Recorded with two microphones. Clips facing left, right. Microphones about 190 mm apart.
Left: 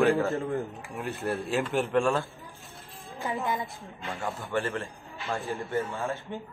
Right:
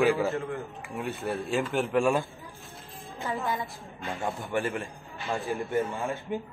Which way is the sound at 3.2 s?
20° left (ahead or behind).